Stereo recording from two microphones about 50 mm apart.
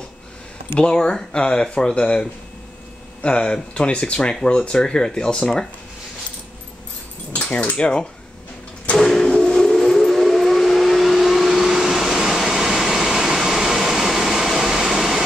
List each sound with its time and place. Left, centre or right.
0.7 s speech: centre
7.5 s speech: left
8.9 s bird: centre
9.3 s a sound: centre